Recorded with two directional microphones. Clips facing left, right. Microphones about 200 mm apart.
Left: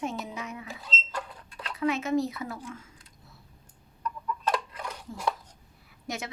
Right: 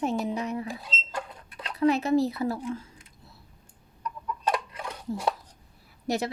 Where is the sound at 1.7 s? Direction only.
35° right (ahead or behind).